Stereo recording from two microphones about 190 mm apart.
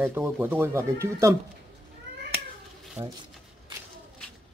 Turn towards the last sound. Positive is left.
turn(degrees=-10)  # may be behind; listen again after turning